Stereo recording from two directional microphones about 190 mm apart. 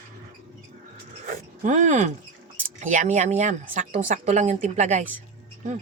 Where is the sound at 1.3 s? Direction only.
40° right (ahead or behind).